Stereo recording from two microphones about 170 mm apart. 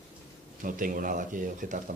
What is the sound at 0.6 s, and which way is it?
Speech, 55° right (ahead or behind).